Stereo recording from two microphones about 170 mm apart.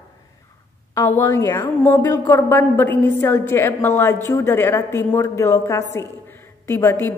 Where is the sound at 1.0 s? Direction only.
20° left (ahead or behind).